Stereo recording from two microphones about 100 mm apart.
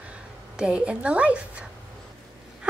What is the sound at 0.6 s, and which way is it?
A woman's voice, 10° right (ahead or behind).